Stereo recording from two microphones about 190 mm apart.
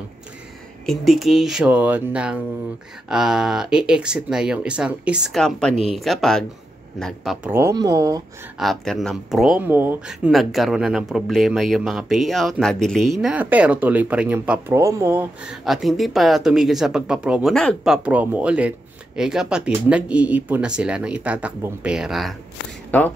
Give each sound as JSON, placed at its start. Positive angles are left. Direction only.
{"t": 0.8, "sound": "speech", "side_deg": 0}
{"t": 7.4, "sound": "speech", "side_deg": -15}
{"t": 8.5, "sound": "speech", "side_deg": 0}